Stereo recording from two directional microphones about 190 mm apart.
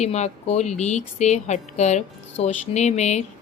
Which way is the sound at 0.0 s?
35° left (ahead or behind).